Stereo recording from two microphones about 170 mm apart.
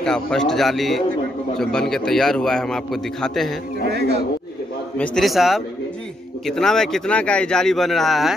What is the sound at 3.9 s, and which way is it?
Speech, 85° right.